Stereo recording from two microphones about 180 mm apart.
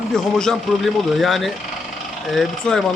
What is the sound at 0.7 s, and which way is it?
Speech, centre (ahead or behind).